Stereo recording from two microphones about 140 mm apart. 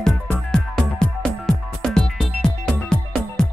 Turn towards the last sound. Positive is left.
turn(degrees=5)  # may be behind; listen again after turning